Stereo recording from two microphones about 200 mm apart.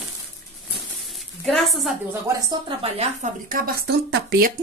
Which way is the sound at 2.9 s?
40° right (ahead or behind).